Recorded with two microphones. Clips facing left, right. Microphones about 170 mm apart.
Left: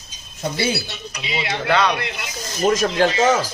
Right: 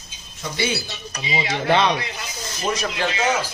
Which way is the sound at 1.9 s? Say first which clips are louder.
Left 2 dB; 60° left (ahead or behind).